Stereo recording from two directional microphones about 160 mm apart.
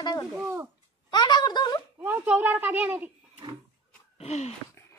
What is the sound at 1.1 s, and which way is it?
Speech, 25° left (ahead or behind).